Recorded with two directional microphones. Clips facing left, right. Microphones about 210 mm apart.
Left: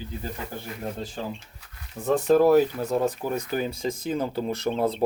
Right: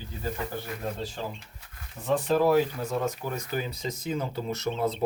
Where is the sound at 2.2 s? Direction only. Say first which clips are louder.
Left 5 dB; 45° left (ahead or behind).